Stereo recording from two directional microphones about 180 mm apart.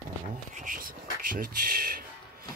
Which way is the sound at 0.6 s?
50° right (ahead or behind).